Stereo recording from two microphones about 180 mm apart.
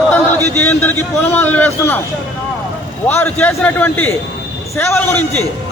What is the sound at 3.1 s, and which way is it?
A man's voice, 15° left (ahead or behind).